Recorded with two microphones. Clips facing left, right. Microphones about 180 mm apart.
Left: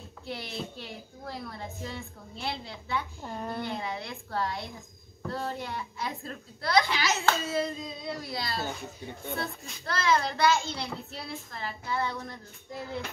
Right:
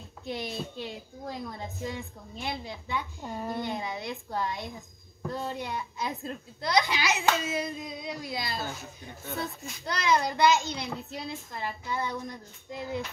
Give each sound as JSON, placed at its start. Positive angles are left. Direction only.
{"t": 0.2, "sound": "a woman's voice", "side_deg": -20}